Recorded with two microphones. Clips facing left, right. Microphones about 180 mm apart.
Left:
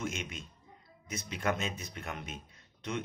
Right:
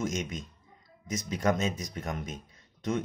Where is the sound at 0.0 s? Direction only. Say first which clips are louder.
Right 6 dB; 40° right (ahead or behind).